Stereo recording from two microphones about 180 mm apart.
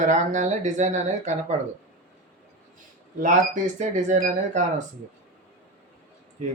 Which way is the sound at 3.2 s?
45° right (ahead or behind).